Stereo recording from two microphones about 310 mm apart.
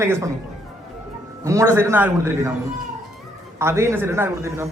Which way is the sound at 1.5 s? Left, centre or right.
Centre.